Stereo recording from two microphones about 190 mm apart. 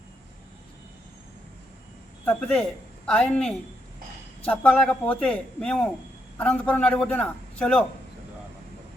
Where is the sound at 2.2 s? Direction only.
10° left (ahead or behind).